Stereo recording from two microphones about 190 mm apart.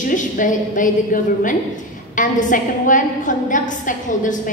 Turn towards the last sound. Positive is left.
turn(degrees=40)  # may be behind; listen again after turning